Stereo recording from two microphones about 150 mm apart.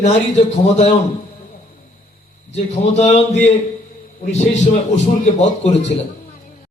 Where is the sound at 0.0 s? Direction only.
50° left (ahead or behind).